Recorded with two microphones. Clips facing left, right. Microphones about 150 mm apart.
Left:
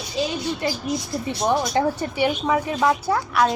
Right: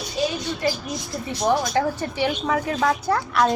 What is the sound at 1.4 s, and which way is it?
Speech, 20° left (ahead or behind).